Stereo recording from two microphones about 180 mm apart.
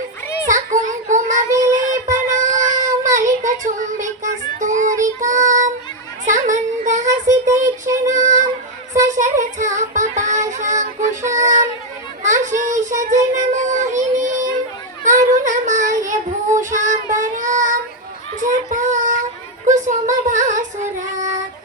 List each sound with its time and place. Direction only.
0.5 s child singing: 45° right (ahead or behind)
1.5 s child singing: 20° right (ahead or behind)
1.9 s child singing: 45° right (ahead or behind)
6.2 s a sound: 45° right (ahead or behind)
8.0 s child singing: 45° right (ahead or behind)
12.2 s children playing: 45° right (ahead or behind)
13.0 s child singing: 45° right (ahead or behind)
19.6 s a sound: 45° right (ahead or behind)